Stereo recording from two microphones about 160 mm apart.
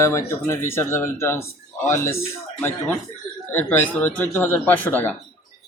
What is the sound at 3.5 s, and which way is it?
Speech, 10° left (ahead or behind).